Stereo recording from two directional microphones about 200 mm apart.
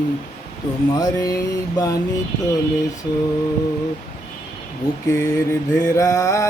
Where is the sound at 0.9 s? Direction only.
20° left (ahead or behind).